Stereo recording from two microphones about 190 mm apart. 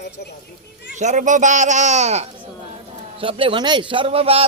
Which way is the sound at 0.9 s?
40° right (ahead or behind).